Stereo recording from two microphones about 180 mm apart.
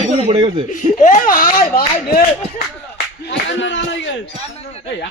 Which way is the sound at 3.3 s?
90° left.